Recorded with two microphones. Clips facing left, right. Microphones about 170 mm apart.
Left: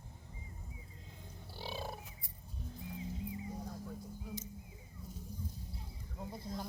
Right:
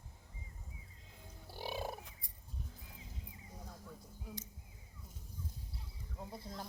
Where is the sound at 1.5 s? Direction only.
15° right (ahead or behind).